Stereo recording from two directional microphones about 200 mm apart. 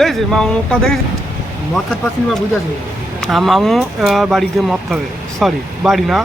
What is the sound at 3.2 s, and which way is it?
Speech, centre (ahead or behind).